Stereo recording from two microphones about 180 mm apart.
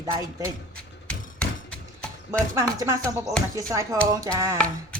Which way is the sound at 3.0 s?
5° left (ahead or behind).